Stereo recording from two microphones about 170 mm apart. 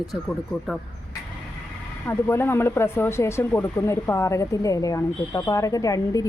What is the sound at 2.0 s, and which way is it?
Speech, 15° left (ahead or behind).